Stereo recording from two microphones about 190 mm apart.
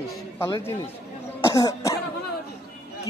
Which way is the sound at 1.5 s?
15° left (ahead or behind).